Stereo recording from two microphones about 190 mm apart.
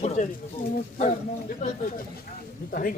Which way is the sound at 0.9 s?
40° left (ahead or behind).